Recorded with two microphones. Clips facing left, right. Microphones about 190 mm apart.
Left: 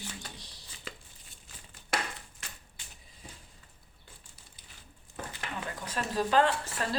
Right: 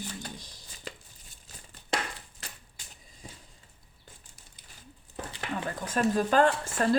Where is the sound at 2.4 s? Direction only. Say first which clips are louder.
Right 4 dB; 35° right (ahead or behind).